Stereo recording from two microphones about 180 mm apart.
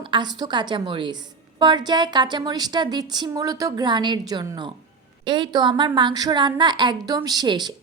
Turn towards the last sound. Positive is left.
turn(degrees=-25)  # may be behind; listen again after turning